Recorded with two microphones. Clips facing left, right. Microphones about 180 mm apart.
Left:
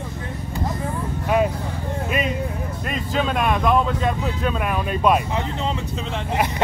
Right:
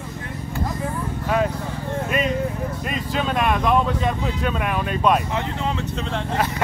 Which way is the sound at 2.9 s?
Centre (ahead or behind).